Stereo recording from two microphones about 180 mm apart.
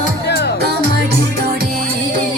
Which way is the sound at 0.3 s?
65° left (ahead or behind).